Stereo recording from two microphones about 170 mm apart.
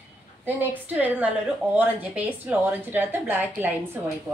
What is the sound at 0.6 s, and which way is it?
A woman's voice, 10° right (ahead or behind).